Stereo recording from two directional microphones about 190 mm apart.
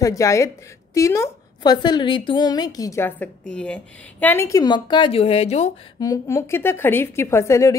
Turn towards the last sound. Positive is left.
turn(degrees=15)  # may be behind; listen again after turning